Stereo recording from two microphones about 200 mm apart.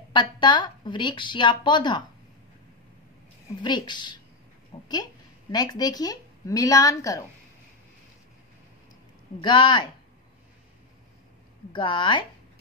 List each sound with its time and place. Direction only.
0.1 s a woman's voice: 20° left (ahead or behind)
3.6 s a woman's voice: 20° left (ahead or behind)
4.7 s a sound: 20° left (ahead or behind)
5.5 s speech: 20° left (ahead or behind)
9.4 s a woman's voice: 25° left (ahead or behind)
11.7 s a woman's voice: 25° left (ahead or behind)